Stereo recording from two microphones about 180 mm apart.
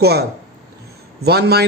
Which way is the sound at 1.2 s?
65° right (ahead or behind).